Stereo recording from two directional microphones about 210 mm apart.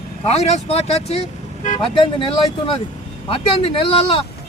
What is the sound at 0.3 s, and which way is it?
Speech, 30° left (ahead or behind).